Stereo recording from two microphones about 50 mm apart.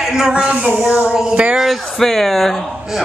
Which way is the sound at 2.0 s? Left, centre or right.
Centre.